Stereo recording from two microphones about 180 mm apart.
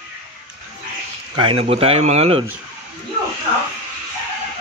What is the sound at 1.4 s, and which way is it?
Speech, 30° right (ahead or behind).